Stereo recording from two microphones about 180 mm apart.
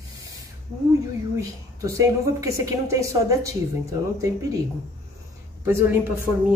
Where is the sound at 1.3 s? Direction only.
15° right (ahead or behind).